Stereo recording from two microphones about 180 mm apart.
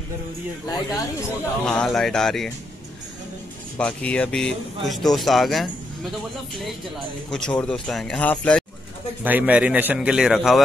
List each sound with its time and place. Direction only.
0.7 s speech: 20° left (ahead or behind)
1.7 s speech: 5° left (ahead or behind)
3.7 s speech: 5° left (ahead or behind)
7.2 s speech: 5° left (ahead or behind)
9.2 s a man's voice: 10° right (ahead or behind)